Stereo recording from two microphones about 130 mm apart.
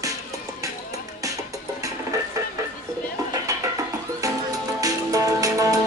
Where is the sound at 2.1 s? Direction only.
25° right (ahead or behind).